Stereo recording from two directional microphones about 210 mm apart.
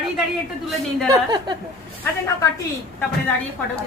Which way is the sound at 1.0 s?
20° right (ahead or behind).